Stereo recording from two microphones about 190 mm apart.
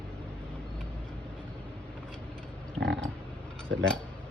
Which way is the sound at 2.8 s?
65° right (ahead or behind).